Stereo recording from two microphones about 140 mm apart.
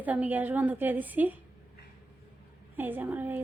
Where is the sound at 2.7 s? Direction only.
15° right (ahead or behind).